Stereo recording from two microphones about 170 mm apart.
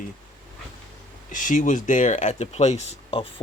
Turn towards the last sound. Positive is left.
turn(degrees=35)  # may be behind; listen again after turning